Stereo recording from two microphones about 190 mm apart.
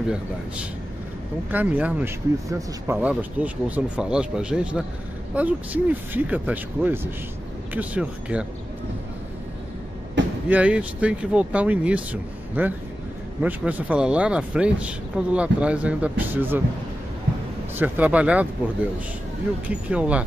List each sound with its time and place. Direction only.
1.5 s speech: 10° right (ahead or behind)
10.2 s vehicle: 70° right (ahead or behind)
10.5 s speech: 5° right (ahead or behind)
17.7 s speech: 10° right (ahead or behind)